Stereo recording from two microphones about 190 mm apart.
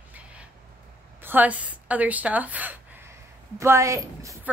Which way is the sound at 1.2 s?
10° right (ahead or behind).